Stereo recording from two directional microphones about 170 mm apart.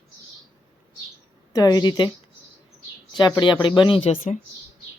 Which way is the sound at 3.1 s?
25° left (ahead or behind).